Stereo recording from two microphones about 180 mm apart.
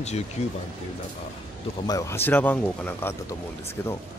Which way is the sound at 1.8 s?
20° left (ahead or behind).